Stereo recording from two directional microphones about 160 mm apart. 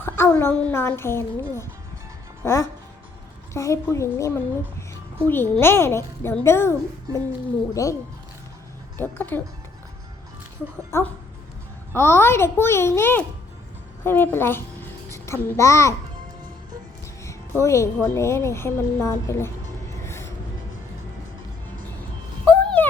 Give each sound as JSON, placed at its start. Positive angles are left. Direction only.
{"t": 0.0, "sound": "a woman's voice", "side_deg": 15}
{"t": 9.0, "sound": "a woman's voice", "side_deg": 15}
{"t": 10.9, "sound": "a woman's voice", "side_deg": 15}
{"t": 17.2, "sound": "a woman's voice", "side_deg": 20}
{"t": 20.0, "sound": "music", "side_deg": 15}
{"t": 22.4, "sound": "a sound", "side_deg": 10}